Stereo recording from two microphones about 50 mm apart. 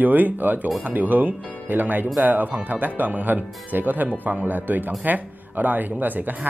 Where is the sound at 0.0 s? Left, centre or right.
Right.